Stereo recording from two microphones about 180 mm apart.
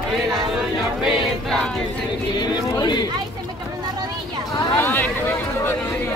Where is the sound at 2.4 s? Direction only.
25° left (ahead or behind).